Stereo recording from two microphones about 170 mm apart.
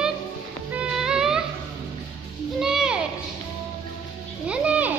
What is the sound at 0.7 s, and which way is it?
Music, 5° right (ahead or behind).